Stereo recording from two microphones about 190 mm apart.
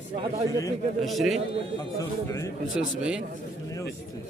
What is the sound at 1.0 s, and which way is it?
Speech, centre (ahead or behind).